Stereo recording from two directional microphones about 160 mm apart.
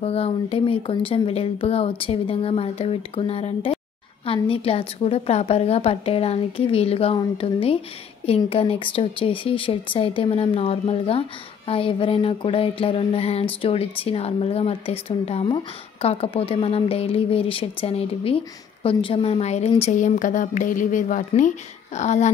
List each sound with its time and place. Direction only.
0.0 s speech: 40° left (ahead or behind)